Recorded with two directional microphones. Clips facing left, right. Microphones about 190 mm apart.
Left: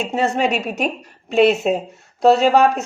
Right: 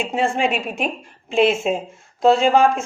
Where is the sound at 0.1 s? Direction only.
40° left (ahead or behind).